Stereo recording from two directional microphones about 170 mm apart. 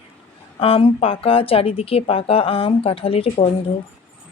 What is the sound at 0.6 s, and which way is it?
Speech, 30° left (ahead or behind).